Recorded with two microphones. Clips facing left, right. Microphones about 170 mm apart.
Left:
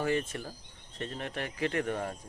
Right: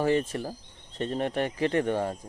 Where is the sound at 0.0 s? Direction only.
35° right (ahead or behind).